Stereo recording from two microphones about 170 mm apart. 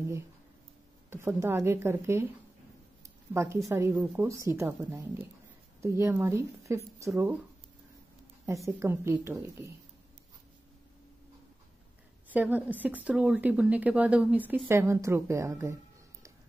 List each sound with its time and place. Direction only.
1.1 s a woman's voice: 15° right (ahead or behind)
3.3 s a woman's voice: 15° right (ahead or behind)
8.5 s a woman's voice: 15° right (ahead or behind)
12.3 s a woman's voice: 10° right (ahead or behind)